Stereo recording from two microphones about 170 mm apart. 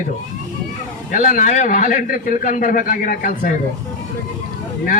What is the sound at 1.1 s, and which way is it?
A man's voice, 50° left (ahead or behind).